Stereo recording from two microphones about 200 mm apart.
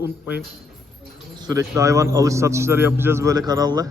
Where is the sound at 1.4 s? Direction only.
20° right (ahead or behind).